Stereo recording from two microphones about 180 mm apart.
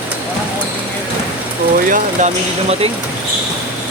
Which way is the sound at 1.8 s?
50° right (ahead or behind).